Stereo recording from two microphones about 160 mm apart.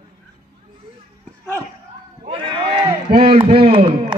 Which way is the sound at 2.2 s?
35° right (ahead or behind).